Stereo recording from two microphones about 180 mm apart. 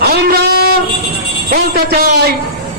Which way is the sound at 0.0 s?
60° right (ahead or behind).